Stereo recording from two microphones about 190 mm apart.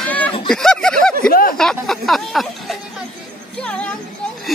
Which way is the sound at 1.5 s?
Centre (ahead or behind).